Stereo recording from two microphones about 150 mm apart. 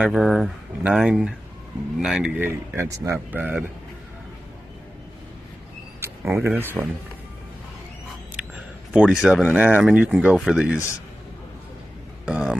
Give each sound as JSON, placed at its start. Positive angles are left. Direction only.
{"t": 0.0, "sound": "speech", "side_deg": -5}
{"t": 6.3, "sound": "speech", "side_deg": -15}
{"t": 8.4, "sound": "speech", "side_deg": -5}
{"t": 12.3, "sound": "speech", "side_deg": -5}